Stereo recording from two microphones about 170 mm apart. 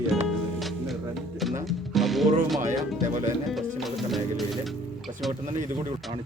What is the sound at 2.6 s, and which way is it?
Speech, 50° right (ahead or behind).